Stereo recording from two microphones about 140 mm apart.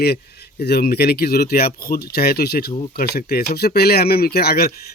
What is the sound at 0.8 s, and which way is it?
Speech, 90° left.